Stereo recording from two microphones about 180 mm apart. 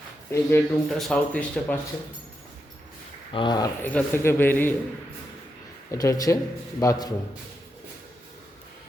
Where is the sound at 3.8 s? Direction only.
10° left (ahead or behind).